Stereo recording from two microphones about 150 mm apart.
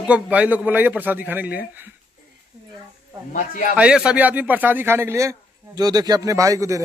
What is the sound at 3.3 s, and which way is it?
Speech, 65° left (ahead or behind).